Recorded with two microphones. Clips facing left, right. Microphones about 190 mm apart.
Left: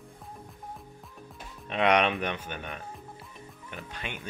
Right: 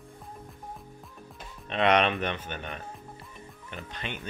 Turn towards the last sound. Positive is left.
turn(degrees=10)  # may be behind; listen again after turning